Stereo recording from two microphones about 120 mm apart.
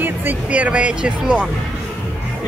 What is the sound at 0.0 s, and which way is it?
Speech, 15° right (ahead or behind).